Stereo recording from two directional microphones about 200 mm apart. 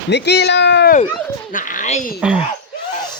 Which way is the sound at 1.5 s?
40° left (ahead or behind).